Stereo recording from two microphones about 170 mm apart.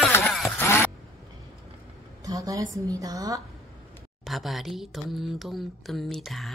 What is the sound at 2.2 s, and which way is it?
A woman's voice, 20° right (ahead or behind).